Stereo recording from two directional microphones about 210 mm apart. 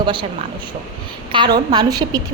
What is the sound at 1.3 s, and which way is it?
Speech, 20° right (ahead or behind).